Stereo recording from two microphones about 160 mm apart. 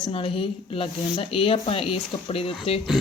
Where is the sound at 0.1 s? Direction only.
35° left (ahead or behind).